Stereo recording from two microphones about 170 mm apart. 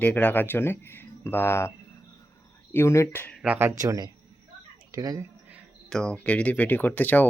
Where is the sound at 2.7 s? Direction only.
15° left (ahead or behind).